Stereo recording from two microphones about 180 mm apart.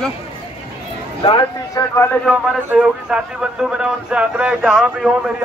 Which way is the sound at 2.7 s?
5° right (ahead or behind).